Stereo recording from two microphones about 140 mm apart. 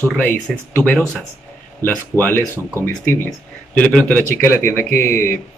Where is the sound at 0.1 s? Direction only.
10° left (ahead or behind).